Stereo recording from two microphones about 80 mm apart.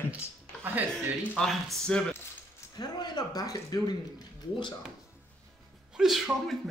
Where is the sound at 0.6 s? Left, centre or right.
Right.